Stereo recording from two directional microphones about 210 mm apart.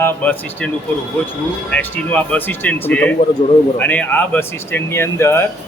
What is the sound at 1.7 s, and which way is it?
Speech, 5° left (ahead or behind).